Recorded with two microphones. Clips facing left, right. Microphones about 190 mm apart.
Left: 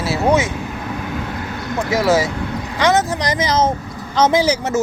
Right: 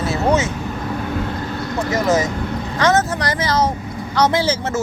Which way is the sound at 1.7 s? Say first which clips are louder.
Left 2 dB; 10° left (ahead or behind).